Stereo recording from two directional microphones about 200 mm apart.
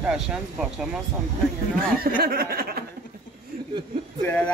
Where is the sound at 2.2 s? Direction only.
50° right (ahead or behind).